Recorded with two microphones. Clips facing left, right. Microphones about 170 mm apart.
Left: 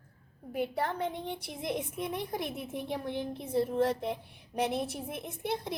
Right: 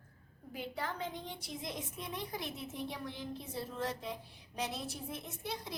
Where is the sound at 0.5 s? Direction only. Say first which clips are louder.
Left 8 dB; 60° left (ahead or behind).